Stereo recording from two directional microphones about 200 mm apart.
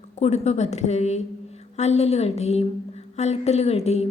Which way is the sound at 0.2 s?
35° left (ahead or behind).